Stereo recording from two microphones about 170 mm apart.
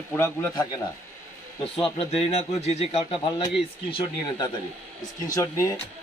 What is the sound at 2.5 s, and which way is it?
Speech, 40° left (ahead or behind).